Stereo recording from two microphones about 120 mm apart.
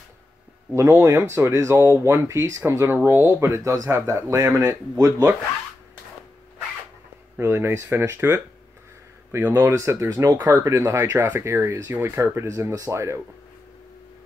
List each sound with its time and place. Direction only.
0.7 s speech: 20° right (ahead or behind)
7.3 s speech: 20° right (ahead or behind)